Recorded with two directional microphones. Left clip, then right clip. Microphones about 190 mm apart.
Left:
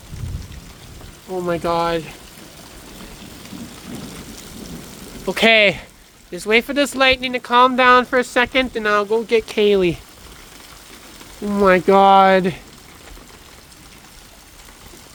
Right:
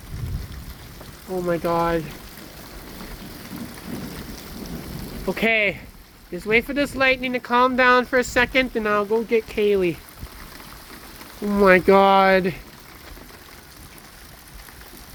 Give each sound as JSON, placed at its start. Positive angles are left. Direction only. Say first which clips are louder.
{"t": 1.3, "sound": "speech", "louder": "left 2 dB", "side_deg": 10}
{"t": 5.2, "sound": "speech", "louder": "left 7 dB", "side_deg": 30}
{"t": 11.4, "sound": "speech", "louder": "left 1 dB", "side_deg": 5}